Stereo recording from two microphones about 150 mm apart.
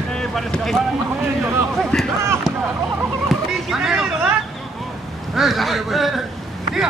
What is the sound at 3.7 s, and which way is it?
Vehicle, centre (ahead or behind).